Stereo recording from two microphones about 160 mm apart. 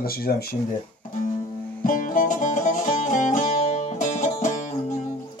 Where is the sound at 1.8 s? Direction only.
60° left (ahead or behind).